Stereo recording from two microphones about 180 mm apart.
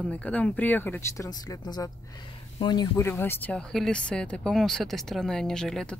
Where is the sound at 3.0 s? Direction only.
15° left (ahead or behind).